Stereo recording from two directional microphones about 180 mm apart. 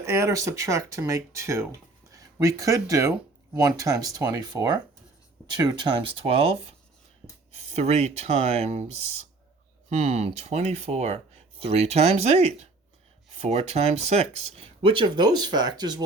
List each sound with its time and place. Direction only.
0.0 s speech: 15° right (ahead or behind); by 8.9 s 35° right (ahead or behind)
9.9 s speech: 40° right (ahead or behind); by 16.0 s 20° right (ahead or behind)